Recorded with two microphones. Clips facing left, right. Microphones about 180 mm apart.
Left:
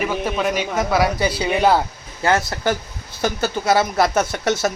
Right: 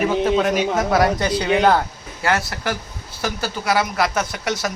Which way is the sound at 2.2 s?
20° left (ahead or behind).